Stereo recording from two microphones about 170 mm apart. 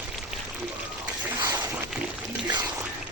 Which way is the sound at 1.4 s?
25° right (ahead or behind).